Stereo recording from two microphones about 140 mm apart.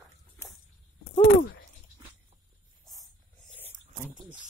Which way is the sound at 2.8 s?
Centre (ahead or behind).